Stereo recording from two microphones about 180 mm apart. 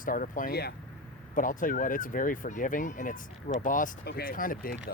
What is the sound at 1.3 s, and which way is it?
Speech, 50° left (ahead or behind).